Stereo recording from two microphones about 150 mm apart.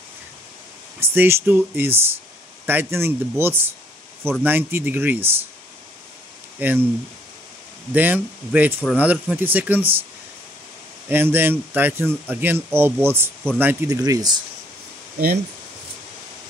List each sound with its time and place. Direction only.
0.9 s speech: 15° right (ahead or behind)
6.6 s speech: 15° right (ahead or behind)
7.9 s speech: 10° right (ahead or behind)
11.1 s speech: 15° right (ahead or behind)